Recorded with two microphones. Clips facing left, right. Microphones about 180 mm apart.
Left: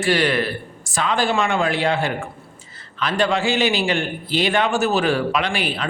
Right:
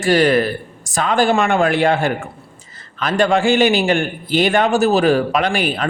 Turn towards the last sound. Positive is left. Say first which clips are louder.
# right 5 dB
turn(degrees=-45)  # may be behind; listen again after turning